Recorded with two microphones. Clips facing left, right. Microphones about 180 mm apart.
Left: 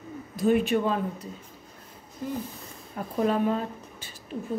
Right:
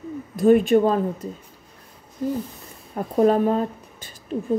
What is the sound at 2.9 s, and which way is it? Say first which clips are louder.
Speech: right 7 dB; 40° right (ahead or behind).